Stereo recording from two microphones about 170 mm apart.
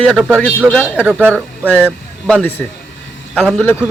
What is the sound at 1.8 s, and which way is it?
Speech, centre (ahead or behind).